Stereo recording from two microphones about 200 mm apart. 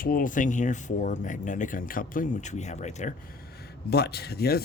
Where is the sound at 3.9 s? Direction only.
55° left (ahead or behind).